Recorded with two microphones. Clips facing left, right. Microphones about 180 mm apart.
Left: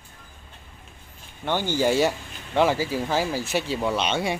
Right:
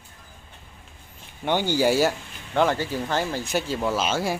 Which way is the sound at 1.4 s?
15° right (ahead or behind).